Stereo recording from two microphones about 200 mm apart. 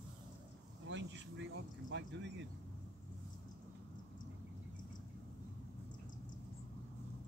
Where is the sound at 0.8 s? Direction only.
65° right (ahead or behind).